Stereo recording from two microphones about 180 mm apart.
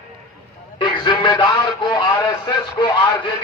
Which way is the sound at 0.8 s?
25° left (ahead or behind).